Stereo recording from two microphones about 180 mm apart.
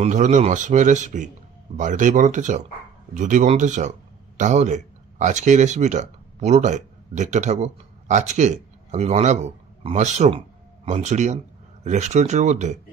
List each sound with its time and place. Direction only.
0.0 s a man's voice: 40° right (ahead or behind)